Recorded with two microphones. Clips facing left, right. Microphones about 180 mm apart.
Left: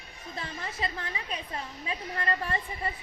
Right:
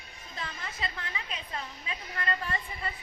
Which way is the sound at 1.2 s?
30° left (ahead or behind).